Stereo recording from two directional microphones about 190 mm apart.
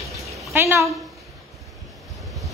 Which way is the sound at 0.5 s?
15° right (ahead or behind).